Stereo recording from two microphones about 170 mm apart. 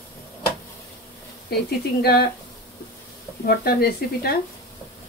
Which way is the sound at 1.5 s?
65° left (ahead or behind).